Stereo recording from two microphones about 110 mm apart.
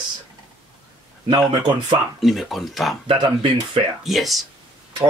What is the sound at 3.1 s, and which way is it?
Speech, 50° right (ahead or behind).